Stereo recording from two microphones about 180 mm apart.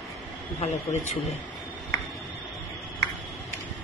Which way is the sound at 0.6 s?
40° left (ahead or behind).